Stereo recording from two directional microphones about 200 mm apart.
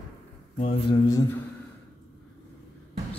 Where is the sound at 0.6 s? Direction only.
30° left (ahead or behind).